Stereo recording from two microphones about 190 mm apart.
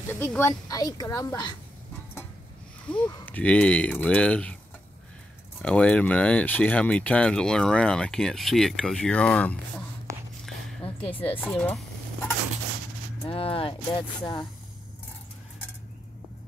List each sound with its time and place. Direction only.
0.1 s a woman's voice: 10° left (ahead or behind)
2.9 s a woman's voice: 5° left (ahead or behind)
5.6 s speech: 5° left (ahead or behind)
10.8 s music: 30° left (ahead or behind)
11.4 s speech: centre (ahead or behind)
13.3 s speech: 30° left (ahead or behind)